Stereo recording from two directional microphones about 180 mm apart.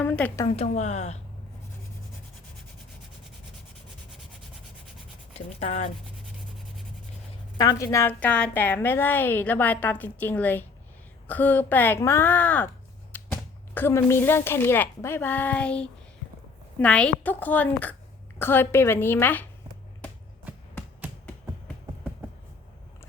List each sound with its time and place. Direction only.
0.0 s speech: 10° left (ahead or behind)
0.5 s speech: 35° left (ahead or behind)
5.5 s speech: 40° left (ahead or behind)
7.6 s a woman's voice: 20° left (ahead or behind)